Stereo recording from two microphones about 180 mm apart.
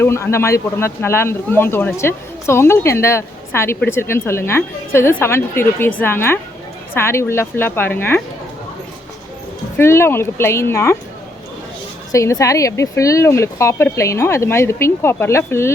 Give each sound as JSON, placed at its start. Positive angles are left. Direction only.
{"t": 0.0, "sound": "speech", "side_deg": 15}
{"t": 9.7, "sound": "speech", "side_deg": 15}
{"t": 12.1, "sound": "speech", "side_deg": 20}